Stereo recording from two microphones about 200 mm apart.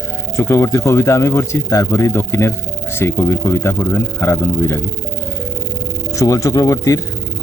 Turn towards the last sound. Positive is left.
turn(degrees=15)  # may be behind; listen again after turning